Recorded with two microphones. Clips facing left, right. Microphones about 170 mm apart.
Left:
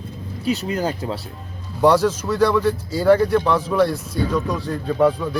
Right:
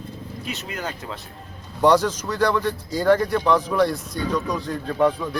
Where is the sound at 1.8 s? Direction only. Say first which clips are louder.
Left 2 dB; 5° left (ahead or behind).